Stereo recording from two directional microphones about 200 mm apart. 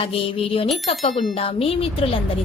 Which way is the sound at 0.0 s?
30° left (ahead or behind).